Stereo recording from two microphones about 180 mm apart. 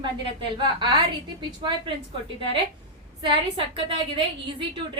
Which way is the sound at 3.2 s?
30° right (ahead or behind).